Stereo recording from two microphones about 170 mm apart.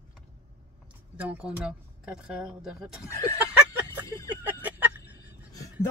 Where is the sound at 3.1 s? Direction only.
20° left (ahead or behind).